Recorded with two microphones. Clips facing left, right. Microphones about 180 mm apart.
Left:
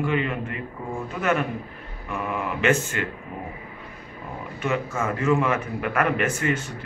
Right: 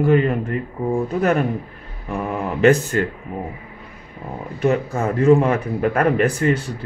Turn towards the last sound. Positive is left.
turn(degrees=-35)  # may be behind; listen again after turning